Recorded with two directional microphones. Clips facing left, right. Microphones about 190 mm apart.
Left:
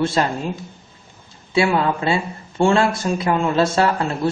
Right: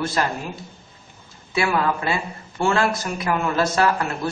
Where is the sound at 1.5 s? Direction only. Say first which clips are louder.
Left 4 dB; 25° left (ahead or behind).